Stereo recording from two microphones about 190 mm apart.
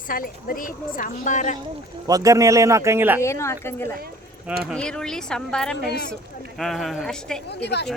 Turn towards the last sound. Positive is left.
turn(degrees=60)  # may be behind; listen again after turning